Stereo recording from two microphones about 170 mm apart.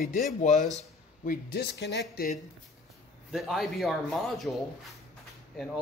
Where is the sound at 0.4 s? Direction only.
45° left (ahead or behind); by 2.2 s 85° left.